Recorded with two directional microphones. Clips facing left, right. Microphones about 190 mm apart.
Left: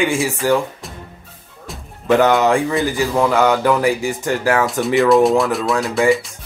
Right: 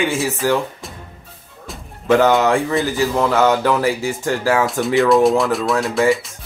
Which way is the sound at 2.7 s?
Centre (ahead or behind).